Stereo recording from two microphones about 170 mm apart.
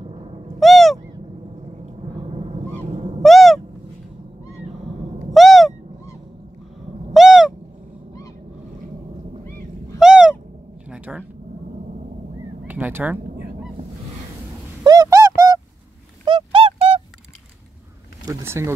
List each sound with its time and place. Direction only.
0.0 s owl: 35° right (ahead or behind)
0.6 s owl: centre (ahead or behind)
2.2 s owl: 40° right (ahead or behind)
3.2 s owl: centre (ahead or behind)
5.3 s owl: centre (ahead or behind)
7.2 s owl: 5° right (ahead or behind)
9.9 s owl: 5° right (ahead or behind)
10.9 s a sound: 5° right (ahead or behind)
12.6 s a sound: 10° right (ahead or behind)
14.8 s a sound: 20° right (ahead or behind)
16.3 s music: 30° right (ahead or behind)
18.2 s speech: 15° right (ahead or behind)